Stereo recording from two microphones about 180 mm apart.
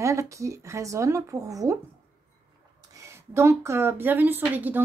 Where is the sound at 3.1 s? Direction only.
15° right (ahead or behind).